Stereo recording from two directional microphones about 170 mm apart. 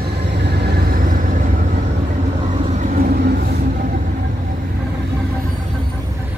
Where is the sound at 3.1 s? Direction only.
70° right (ahead or behind).